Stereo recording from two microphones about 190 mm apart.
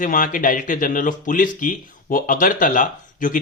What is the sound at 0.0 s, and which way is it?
Speech, 45° left (ahead or behind).